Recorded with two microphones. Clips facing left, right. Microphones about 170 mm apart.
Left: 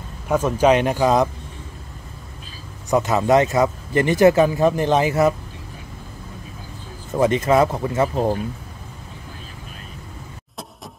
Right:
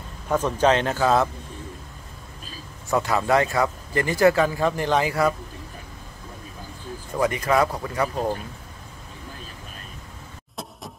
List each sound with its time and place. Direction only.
0.3 s speech: 10° left (ahead or behind)
2.9 s speech: 20° left (ahead or behind)
7.1 s speech: 25° left (ahead or behind)